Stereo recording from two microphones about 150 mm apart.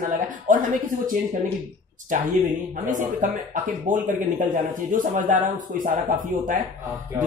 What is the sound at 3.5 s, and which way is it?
Speech, 60° right (ahead or behind).